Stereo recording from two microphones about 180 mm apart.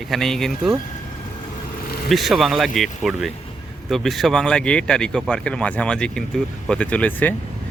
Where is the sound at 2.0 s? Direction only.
Centre (ahead or behind).